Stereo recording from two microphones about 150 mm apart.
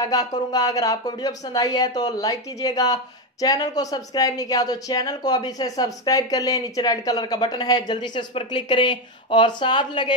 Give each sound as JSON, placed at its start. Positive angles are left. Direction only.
{"t": 0.0, "sound": "speech", "side_deg": 25}